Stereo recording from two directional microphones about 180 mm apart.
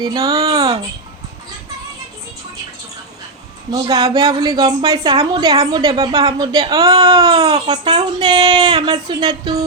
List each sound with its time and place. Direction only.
0.0 s a woman's voice: 20° right (ahead or behind)
3.7 s a woman's voice: 20° right (ahead or behind)